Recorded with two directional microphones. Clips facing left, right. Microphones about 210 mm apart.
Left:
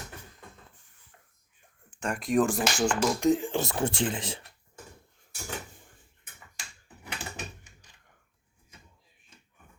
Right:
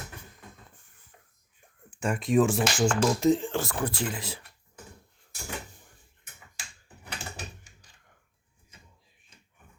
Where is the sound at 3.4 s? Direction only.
20° left (ahead or behind).